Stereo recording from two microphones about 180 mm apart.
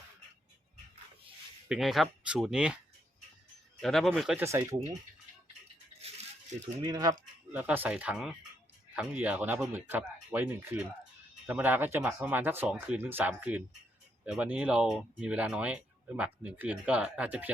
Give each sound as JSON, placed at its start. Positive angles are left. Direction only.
{"t": 1.7, "sound": "speech", "side_deg": 0}
{"t": 3.8, "sound": "speech", "side_deg": 0}
{"t": 4.4, "sound": "speech", "side_deg": -15}
{"t": 6.8, "sound": "speech", "side_deg": -20}
{"t": 7.5, "sound": "speech", "side_deg": -10}